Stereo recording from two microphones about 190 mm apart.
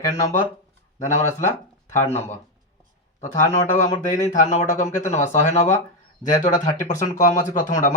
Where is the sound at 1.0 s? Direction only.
40° left (ahead or behind).